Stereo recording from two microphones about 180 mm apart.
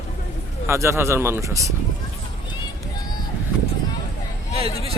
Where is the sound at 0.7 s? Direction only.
15° right (ahead or behind).